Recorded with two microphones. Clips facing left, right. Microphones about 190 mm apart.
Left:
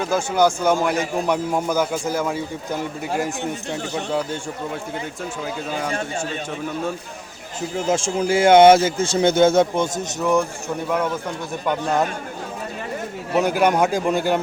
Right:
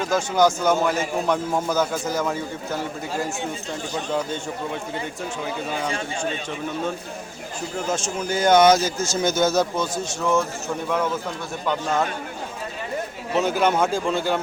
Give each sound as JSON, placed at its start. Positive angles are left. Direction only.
{"t": 0.1, "sound": "a man's voice", "side_deg": 10}
{"t": 7.9, "sound": "a man's voice", "side_deg": 30}
{"t": 11.7, "sound": "a man's voice", "side_deg": 15}
{"t": 13.3, "sound": "a man's voice", "side_deg": 10}